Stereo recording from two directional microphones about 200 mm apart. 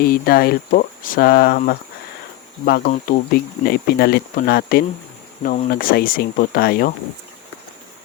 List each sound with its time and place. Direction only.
0.0 s speech: 45° left (ahead or behind)